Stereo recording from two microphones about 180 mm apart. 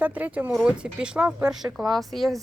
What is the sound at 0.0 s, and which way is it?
Speech, 10° right (ahead or behind).